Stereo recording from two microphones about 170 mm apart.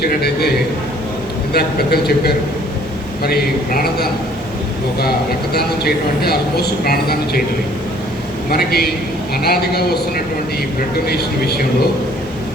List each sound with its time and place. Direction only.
0.0 s speech: 70° left (ahead or behind)
1.5 s a man's voice: 70° left (ahead or behind)
5.5 s speech: 65° left (ahead or behind)
8.4 s a man's voice: 65° left (ahead or behind)
11.0 s speech: 70° left (ahead or behind)